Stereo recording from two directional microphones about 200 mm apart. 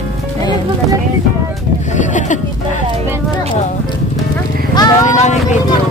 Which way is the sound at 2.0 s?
40° left (ahead or behind).